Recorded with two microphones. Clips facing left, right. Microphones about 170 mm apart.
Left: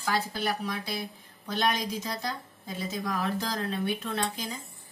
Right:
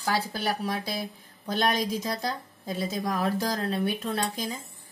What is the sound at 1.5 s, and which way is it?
A woman's voice, 40° right (ahead or behind).